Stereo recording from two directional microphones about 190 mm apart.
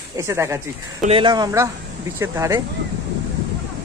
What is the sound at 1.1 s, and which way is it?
Speech, 25° right (ahead or behind).